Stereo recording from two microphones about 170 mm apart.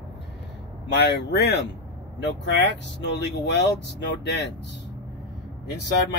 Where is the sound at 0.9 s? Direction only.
85° left.